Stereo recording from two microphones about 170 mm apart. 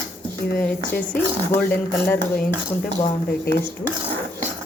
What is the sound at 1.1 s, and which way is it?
Speech, 10° left (ahead or behind).